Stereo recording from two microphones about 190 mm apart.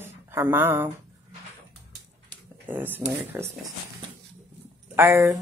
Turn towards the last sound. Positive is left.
turn(degrees=-15)  # may be behind; listen again after turning